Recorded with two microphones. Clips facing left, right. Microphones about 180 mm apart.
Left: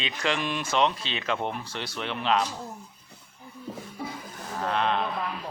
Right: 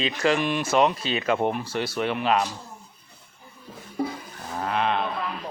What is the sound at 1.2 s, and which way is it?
Speech, 50° right (ahead or behind).